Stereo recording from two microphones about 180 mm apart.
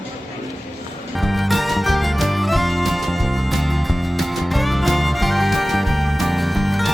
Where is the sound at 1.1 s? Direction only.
Centre (ahead or behind).